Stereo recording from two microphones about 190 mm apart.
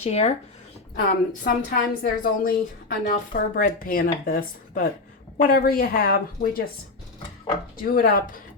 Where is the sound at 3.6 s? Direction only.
50° left (ahead or behind).